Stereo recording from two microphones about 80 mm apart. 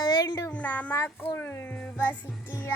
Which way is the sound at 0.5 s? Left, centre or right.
Centre.